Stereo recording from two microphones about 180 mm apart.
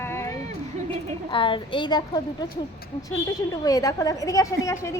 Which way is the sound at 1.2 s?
30° left (ahead or behind).